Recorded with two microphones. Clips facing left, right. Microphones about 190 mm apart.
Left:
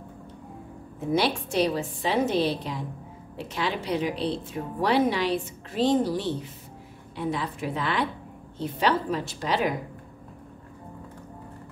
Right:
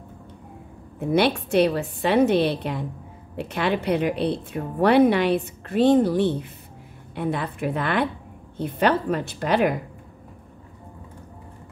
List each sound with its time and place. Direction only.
0.9 s a woman's voice: 60° right (ahead or behind)